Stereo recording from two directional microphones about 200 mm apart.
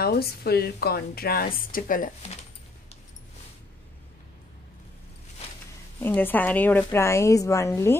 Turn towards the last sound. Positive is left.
turn(degrees=15)  # may be behind; listen again after turning